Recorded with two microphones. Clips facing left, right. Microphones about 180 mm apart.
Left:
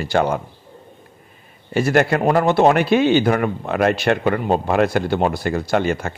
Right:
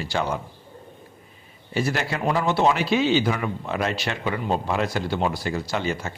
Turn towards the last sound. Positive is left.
turn(degrees=55)  # may be behind; listen again after turning